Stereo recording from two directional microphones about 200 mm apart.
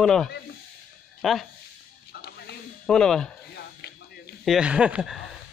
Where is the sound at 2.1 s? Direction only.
55° left (ahead or behind).